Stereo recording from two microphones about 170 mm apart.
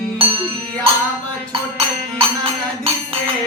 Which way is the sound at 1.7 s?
35° right (ahead or behind).